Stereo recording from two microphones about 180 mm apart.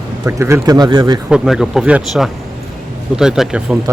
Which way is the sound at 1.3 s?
5° right (ahead or behind).